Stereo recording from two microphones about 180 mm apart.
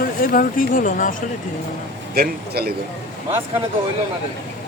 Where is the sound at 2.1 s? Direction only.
60° right (ahead or behind).